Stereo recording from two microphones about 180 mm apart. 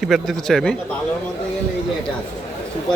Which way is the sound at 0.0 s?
Centre (ahead or behind).